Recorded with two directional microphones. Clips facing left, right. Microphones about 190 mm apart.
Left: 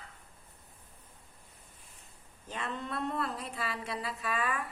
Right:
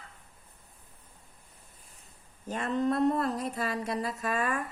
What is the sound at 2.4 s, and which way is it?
Speech, 45° right (ahead or behind).